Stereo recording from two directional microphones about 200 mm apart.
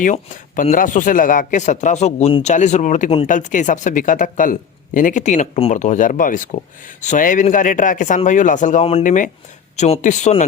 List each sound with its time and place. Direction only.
0.0 s speech: 40° left (ahead or behind)